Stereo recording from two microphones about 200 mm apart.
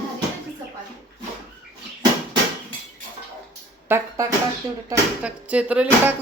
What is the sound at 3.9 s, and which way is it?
Speech, 10° right (ahead or behind).